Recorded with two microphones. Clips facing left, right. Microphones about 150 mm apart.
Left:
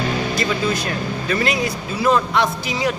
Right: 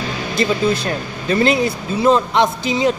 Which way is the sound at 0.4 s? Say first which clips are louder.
Right 4 dB; 30° right (ahead or behind).